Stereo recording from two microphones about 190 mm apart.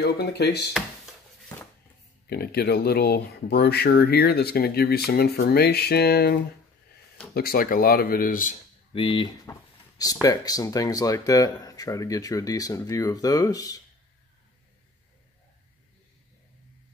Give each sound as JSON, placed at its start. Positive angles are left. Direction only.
{"t": 0.0, "sound": "speech", "side_deg": 60}
{"t": 2.2, "sound": "speech", "side_deg": 55}
{"t": 8.9, "sound": "speech", "side_deg": 25}